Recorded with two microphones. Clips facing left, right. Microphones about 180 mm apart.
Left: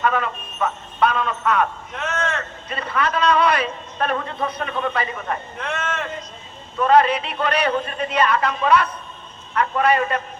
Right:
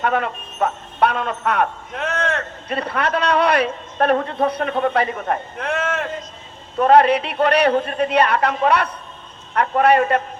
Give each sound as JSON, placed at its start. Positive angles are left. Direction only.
{"t": 0.0, "sound": "a man's voice", "side_deg": -60}
{"t": 4.7, "sound": "a man's voice", "side_deg": -45}
{"t": 6.7, "sound": "a man's voice", "side_deg": -60}